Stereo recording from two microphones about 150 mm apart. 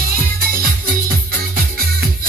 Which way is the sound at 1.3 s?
75° right (ahead or behind).